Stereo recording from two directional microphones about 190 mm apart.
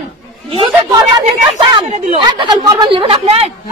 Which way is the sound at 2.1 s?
25° right (ahead or behind).